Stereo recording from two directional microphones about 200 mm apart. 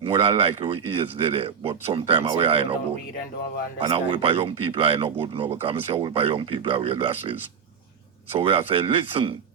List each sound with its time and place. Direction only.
0.0 s speech: 30° right (ahead or behind)
3.8 s speech: 30° right (ahead or behind)